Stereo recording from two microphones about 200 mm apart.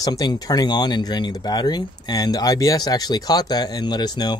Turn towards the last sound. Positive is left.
turn(degrees=20)  # may be behind; listen again after turning